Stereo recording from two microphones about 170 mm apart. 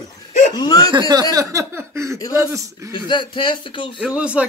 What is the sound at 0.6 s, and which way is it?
Speech, 20° left (ahead or behind).